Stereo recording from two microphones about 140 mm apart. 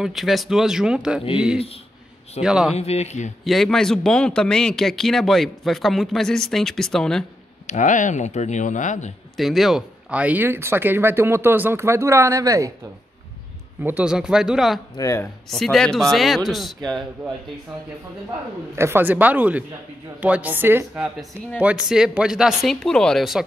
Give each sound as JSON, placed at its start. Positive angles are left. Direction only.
{"t": 0.0, "sound": "speech", "side_deg": 0}
{"t": 2.4, "sound": "speech", "side_deg": -5}
{"t": 2.7, "sound": "a man's voice", "side_deg": 50}
{"t": 3.4, "sound": "speech", "side_deg": 0}
{"t": 7.6, "sound": "speech", "side_deg": 60}
{"t": 9.4, "sound": "speech", "side_deg": 0}
{"t": 13.8, "sound": "speech", "side_deg": -10}
{"t": 15.0, "sound": "speech", "side_deg": 20}
{"t": 15.5, "sound": "speech", "side_deg": 5}
{"t": 18.8, "sound": "speech", "side_deg": -15}